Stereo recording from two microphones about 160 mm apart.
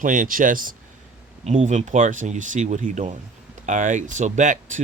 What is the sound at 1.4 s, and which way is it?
Speech, 45° right (ahead or behind).